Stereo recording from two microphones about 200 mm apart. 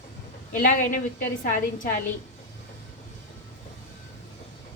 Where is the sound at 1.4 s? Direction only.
40° left (ahead or behind).